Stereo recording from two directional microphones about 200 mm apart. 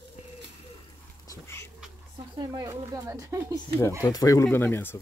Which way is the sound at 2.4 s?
15° right (ahead or behind).